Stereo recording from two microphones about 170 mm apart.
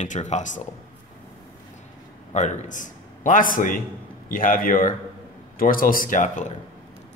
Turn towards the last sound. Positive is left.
turn(degrees=45)  # may be behind; listen again after turning